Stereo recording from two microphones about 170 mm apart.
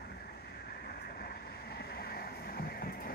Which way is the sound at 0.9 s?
70° left (ahead or behind).